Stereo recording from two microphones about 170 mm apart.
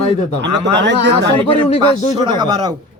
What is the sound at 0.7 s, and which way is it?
Speech, 90° right.